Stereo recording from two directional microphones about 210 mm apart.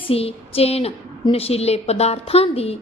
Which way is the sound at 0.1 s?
25° left (ahead or behind).